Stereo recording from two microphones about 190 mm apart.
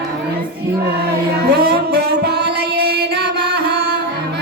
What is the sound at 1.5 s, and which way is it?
Music, 55° right (ahead or behind).